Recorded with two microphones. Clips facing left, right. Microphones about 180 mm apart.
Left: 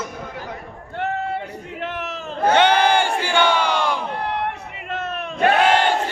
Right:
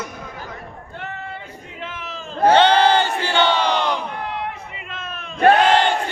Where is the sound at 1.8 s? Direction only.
65° left (ahead or behind).